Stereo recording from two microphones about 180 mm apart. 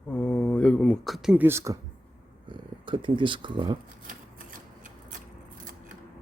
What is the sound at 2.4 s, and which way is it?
Speech, 25° right (ahead or behind).